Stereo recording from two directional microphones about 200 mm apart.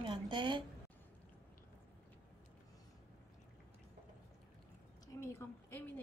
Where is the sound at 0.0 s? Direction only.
20° right (ahead or behind).